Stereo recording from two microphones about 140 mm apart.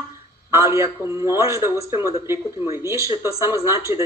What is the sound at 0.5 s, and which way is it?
A man's voice, 20° right (ahead or behind).